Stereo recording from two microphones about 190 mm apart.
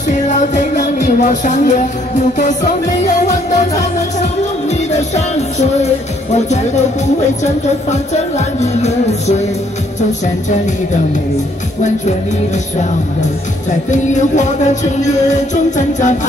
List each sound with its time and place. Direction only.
0.1 s music: 40° left (ahead or behind)
13.8 s music: 40° left (ahead or behind)